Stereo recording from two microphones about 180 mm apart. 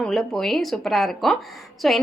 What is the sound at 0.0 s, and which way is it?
A woman's voice, centre (ahead or behind).